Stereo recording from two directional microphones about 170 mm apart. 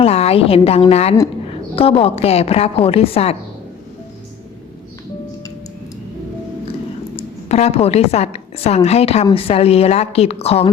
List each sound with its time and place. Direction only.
0.0 s a woman's voice: 35° left (ahead or behind)
7.2 s a woman's voice: 40° left (ahead or behind)